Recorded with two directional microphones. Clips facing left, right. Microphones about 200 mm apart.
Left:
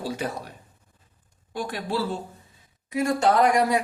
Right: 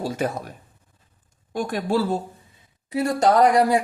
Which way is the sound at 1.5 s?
45° right (ahead or behind).